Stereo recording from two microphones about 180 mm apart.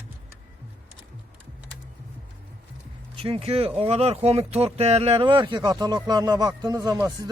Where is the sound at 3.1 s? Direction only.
30° right (ahead or behind).